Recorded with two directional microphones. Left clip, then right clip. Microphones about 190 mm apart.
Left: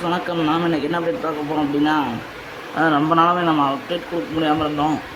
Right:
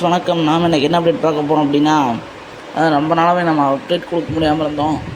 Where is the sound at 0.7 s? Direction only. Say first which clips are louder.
Right 7 dB; 20° right (ahead or behind).